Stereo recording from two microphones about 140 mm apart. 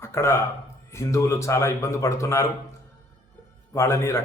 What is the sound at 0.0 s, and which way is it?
A man's voice, 20° left (ahead or behind).